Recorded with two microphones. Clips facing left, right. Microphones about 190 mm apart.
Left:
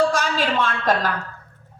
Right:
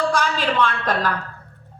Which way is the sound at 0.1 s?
45° left (ahead or behind).